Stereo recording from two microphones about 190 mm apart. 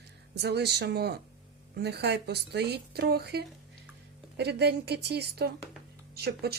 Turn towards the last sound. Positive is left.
turn(degrees=-55)  # may be behind; listen again after turning